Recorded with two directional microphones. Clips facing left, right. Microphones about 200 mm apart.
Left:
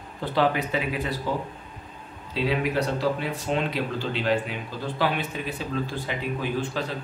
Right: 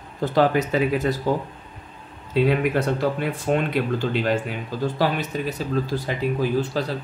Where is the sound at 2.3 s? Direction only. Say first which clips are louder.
Right 5 dB; 50° right (ahead or behind).